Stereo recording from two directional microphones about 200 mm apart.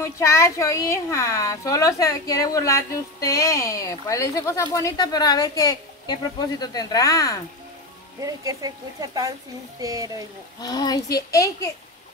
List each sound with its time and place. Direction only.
0.0 s a woman's voice: 15° left (ahead or behind)
8.2 s speech: 15° right (ahead or behind)
10.6 s a woman's voice: 20° left (ahead or behind)